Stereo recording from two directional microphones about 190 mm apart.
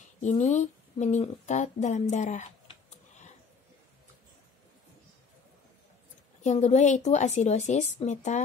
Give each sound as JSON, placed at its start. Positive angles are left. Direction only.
{"t": 0.2, "sound": "speech", "side_deg": 40}
{"t": 6.4, "sound": "a woman's voice", "side_deg": 35}